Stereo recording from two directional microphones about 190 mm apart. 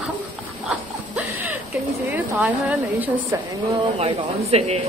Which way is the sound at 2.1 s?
10° right (ahead or behind).